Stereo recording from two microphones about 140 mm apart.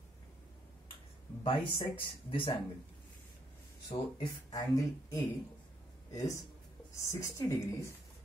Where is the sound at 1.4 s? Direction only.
40° left (ahead or behind).